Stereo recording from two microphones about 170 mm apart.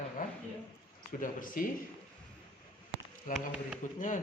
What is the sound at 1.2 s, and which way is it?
Speech, 55° left (ahead or behind).